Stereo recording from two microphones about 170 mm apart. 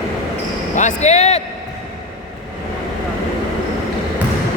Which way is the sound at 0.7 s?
45° left (ahead or behind).